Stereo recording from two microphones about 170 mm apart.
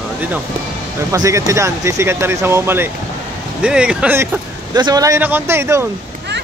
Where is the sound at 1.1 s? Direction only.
20° right (ahead or behind).